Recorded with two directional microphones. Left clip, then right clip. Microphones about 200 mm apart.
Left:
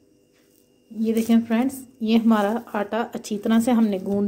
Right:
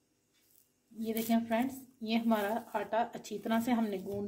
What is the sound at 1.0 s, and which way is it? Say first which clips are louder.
Speech: left 11 dB; 35° left (ahead or behind).